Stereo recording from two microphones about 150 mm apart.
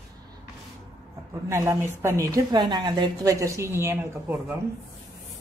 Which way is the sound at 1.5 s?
20° right (ahead or behind).